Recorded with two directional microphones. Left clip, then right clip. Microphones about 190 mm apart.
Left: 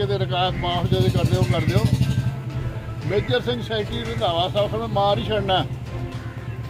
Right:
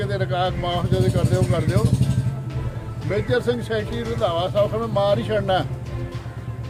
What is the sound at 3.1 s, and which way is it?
Speech, 15° right (ahead or behind).